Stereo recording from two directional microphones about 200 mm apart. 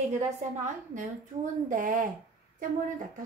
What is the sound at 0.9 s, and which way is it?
A woman's voice, 40° right (ahead or behind).